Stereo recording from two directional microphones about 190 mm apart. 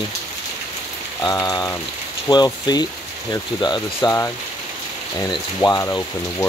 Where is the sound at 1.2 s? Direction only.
20° left (ahead or behind).